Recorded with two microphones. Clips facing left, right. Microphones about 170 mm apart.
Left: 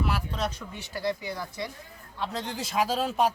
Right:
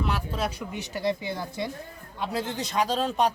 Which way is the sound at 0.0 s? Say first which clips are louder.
Right 1 dB; centre (ahead or behind).